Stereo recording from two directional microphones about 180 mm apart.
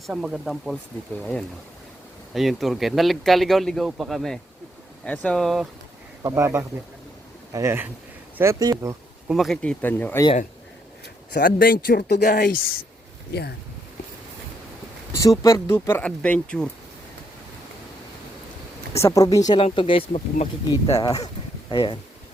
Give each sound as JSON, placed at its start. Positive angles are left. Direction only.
{"t": 0.1, "sound": "speech", "side_deg": 0}
{"t": 6.2, "sound": "speech", "side_deg": -15}
{"t": 9.3, "sound": "speech", "side_deg": 0}
{"t": 11.3, "sound": "speech", "side_deg": 50}
{"t": 15.1, "sound": "speech", "side_deg": 15}
{"t": 19.0, "sound": "speech", "side_deg": 20}
{"t": 20.9, "sound": "speech", "side_deg": 20}